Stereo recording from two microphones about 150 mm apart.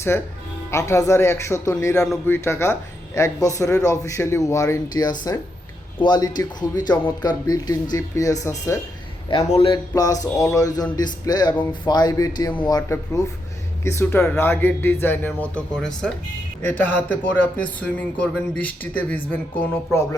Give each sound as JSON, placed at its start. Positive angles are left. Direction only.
{"t": 0.1, "sound": "a man's voice", "side_deg": 15}
{"t": 9.5, "sound": "speech", "side_deg": 35}
{"t": 9.9, "sound": "a man's voice", "side_deg": 25}